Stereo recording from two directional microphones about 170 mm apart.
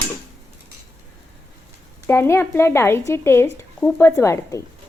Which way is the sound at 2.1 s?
15° left (ahead or behind).